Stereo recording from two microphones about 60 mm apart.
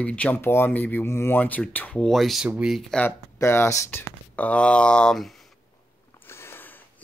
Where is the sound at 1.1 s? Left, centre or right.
Left.